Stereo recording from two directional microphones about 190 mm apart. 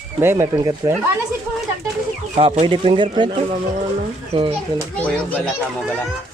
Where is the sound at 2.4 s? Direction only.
30° right (ahead or behind).